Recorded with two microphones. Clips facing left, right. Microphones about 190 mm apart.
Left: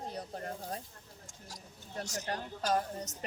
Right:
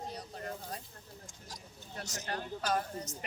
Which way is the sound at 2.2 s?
35° left (ahead or behind).